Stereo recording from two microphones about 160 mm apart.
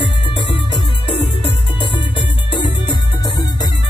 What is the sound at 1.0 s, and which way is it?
Music, 35° left (ahead or behind).